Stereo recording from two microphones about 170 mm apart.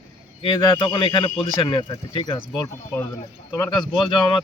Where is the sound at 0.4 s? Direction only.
30° left (ahead or behind).